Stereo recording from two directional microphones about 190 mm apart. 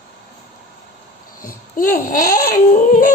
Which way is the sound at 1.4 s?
45° left (ahead or behind).